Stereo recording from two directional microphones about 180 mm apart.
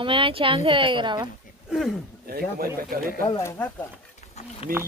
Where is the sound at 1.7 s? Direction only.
Centre (ahead or behind).